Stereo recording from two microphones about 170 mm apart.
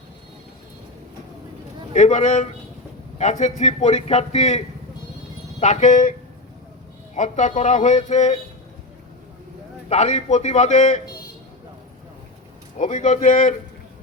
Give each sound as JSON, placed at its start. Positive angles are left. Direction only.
{"t": 1.9, "sound": "a man's voice", "side_deg": 45}
{"t": 7.2, "sound": "speech", "side_deg": 45}
{"t": 9.9, "sound": "a man's voice", "side_deg": 40}
{"t": 12.8, "sound": "speech", "side_deg": 45}